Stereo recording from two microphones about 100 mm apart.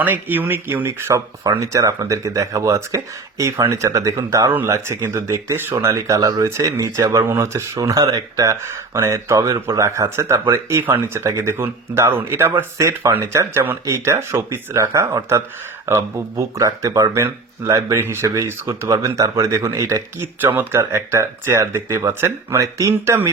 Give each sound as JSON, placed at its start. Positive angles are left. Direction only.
{"t": 0.0, "sound": "speech", "side_deg": -20}